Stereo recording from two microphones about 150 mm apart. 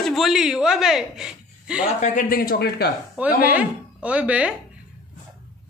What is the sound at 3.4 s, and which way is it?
Speech, 10° right (ahead or behind).